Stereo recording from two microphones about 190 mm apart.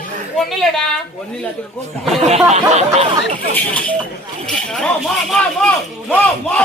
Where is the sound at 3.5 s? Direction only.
10° left (ahead or behind).